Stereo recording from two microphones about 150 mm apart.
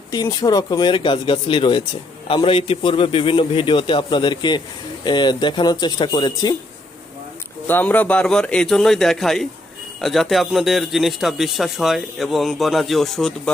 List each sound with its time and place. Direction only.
0.1 s a man's voice: 25° left (ahead or behind)
7.7 s a man's voice: 10° left (ahead or behind)